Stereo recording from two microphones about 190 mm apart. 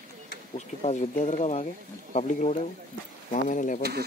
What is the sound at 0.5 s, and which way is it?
Speech, 40° left (ahead or behind).